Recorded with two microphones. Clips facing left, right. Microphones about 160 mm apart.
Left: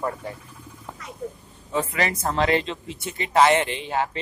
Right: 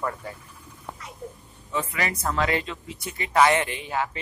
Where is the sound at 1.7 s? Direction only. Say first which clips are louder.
Left 4 dB; 30° left (ahead or behind).